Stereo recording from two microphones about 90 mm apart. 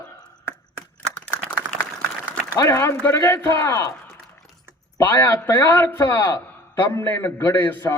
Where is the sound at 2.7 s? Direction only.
30° left (ahead or behind).